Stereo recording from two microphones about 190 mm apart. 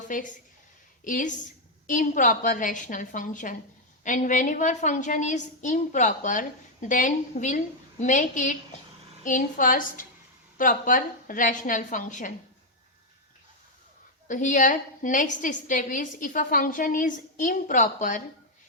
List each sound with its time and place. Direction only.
0.1 s a woman's voice: 45° left (ahead or behind)
14.3 s a woman's voice: 40° left (ahead or behind)